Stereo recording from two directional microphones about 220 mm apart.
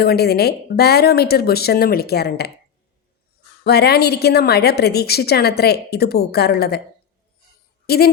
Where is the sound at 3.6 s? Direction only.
45° left (ahead or behind).